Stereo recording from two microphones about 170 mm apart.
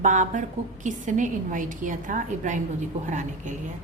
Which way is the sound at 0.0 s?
45° right (ahead or behind).